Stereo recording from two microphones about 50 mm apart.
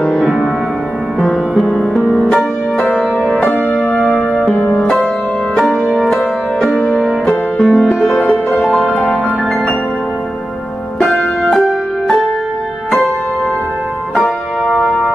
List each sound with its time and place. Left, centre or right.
1.6 s music: centre
3.3 s music: left
5.6 s music: centre
8.2 s music: left
14.1 s music: centre